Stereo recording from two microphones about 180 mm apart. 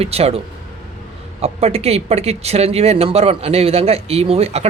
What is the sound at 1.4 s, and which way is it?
Speech, 35° right (ahead or behind).